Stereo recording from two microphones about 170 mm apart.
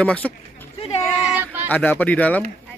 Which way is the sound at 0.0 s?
10° left (ahead or behind).